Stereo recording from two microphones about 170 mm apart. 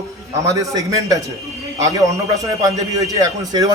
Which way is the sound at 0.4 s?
20° right (ahead or behind).